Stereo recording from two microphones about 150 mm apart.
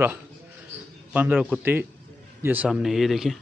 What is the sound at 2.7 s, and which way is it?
Speech, centre (ahead or behind).